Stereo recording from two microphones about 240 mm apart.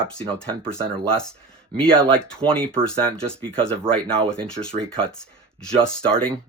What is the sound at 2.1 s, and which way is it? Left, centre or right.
Speech, centre.